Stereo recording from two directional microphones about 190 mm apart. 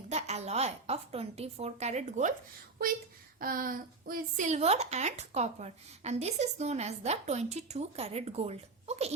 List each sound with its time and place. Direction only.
0.1 s speech: 35° right (ahead or behind)
3.4 s speech: 50° right (ahead or behind)